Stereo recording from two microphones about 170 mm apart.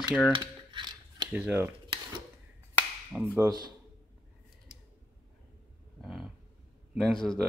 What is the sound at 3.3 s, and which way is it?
Speech, 20° right (ahead or behind).